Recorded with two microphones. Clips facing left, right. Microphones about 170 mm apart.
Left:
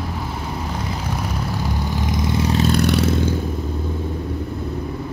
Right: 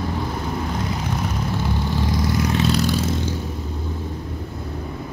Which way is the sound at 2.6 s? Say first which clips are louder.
Left 3 dB; 60° left (ahead or behind).